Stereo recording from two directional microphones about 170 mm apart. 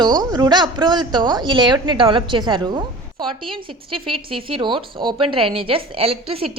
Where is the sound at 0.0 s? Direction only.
25° right (ahead or behind).